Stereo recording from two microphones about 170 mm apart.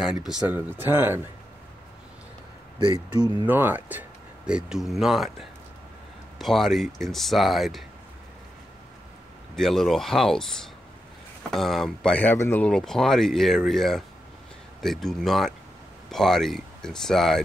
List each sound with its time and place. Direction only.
0.0 s speech: 5° right (ahead or behind)
2.8 s speech: 30° right (ahead or behind)
3.4 s speech: 10° right (ahead or behind)
9.6 s speech: centre (ahead or behind)